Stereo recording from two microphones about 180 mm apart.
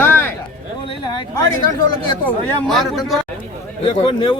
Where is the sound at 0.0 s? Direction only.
10° left (ahead or behind).